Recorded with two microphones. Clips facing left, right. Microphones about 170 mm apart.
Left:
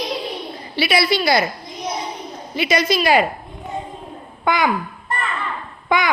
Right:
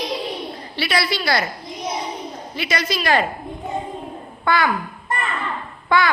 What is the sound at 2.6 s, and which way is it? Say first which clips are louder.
Speech: left 6 dB; 15° left (ahead or behind).